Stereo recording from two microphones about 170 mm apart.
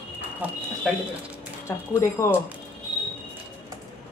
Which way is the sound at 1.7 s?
15° left (ahead or behind).